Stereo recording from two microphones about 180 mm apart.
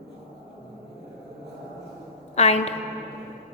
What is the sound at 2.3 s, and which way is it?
Speech, 35° left (ahead or behind).